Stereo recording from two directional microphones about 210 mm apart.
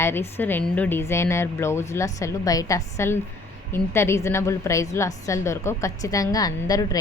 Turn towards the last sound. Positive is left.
turn(degrees=15)  # may be behind; listen again after turning